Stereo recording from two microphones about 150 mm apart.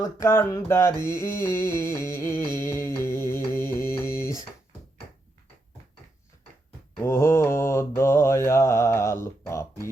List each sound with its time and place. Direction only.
0.0 s mantra: 20° left (ahead or behind)
7.0 s mantra: 15° left (ahead or behind)